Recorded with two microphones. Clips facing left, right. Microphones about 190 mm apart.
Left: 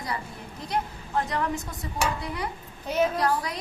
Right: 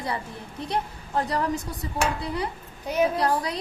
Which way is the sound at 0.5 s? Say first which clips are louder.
Right 1 dB; 30° right (ahead or behind).